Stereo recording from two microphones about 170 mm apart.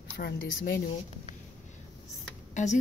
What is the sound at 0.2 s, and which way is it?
Speech, 70° left (ahead or behind).